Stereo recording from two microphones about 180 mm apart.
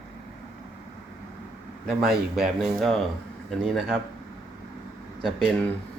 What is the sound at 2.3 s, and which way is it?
A man's voice, 5° right (ahead or behind).